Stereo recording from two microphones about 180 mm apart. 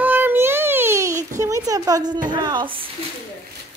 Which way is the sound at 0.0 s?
10° right (ahead or behind).